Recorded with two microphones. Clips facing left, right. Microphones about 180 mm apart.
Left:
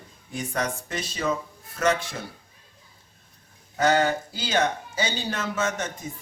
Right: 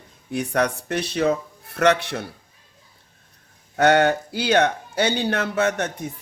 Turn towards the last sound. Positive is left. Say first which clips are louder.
# right 5 dB
turn(degrees=-65)  # may be behind; listen again after turning